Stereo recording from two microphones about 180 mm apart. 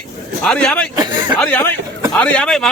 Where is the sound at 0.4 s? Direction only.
5° left (ahead or behind).